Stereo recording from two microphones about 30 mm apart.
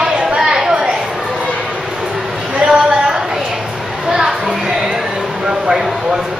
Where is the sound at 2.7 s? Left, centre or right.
Right.